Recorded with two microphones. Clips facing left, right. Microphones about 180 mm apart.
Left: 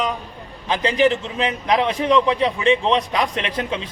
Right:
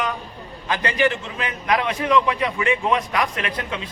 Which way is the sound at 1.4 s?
25° left (ahead or behind).